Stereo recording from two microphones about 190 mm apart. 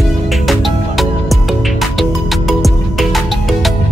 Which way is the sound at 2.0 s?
Centre (ahead or behind).